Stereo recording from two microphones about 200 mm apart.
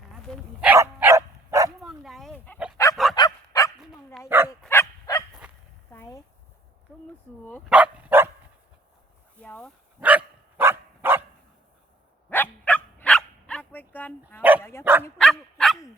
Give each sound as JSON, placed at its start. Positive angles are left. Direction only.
{"t": 0.1, "sound": "dog", "side_deg": -5}
{"t": 1.8, "sound": "a sound", "side_deg": 0}
{"t": 2.9, "sound": "bow-wow", "side_deg": 0}
{"t": 3.2, "sound": "bow-wow", "side_deg": 20}
{"t": 4.3, "sound": "dog", "side_deg": -10}
{"t": 4.6, "sound": "bow-wow", "side_deg": 10}
{"t": 5.9, "sound": "a sound", "side_deg": 15}
{"t": 7.7, "sound": "dog", "side_deg": -5}
{"t": 9.4, "sound": "speech", "side_deg": 5}
{"t": 10.0, "sound": "dog", "side_deg": -10}
{"t": 12.3, "sound": "dog", "side_deg": 10}
{"t": 15.2, "sound": "dog", "side_deg": 0}